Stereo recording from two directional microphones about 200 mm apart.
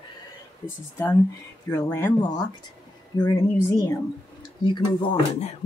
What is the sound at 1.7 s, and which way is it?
Speech, 15° left (ahead or behind).